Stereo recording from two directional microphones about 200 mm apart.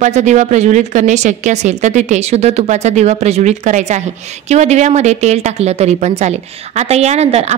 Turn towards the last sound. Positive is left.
turn(degrees=-35)  # may be behind; listen again after turning